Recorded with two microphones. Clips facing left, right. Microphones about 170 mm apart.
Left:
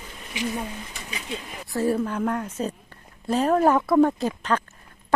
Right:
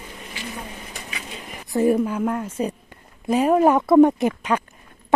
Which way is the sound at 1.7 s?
15° right (ahead or behind).